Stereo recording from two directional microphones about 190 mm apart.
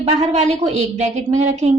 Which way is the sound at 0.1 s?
35° right (ahead or behind).